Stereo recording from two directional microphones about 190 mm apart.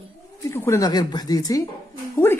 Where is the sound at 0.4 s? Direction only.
15° left (ahead or behind).